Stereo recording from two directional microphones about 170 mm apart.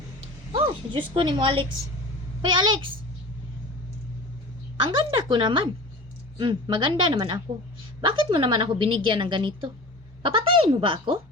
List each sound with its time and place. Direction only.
0.5 s a woman's voice: 30° right (ahead or behind)
4.8 s a woman's voice: 30° right (ahead or behind)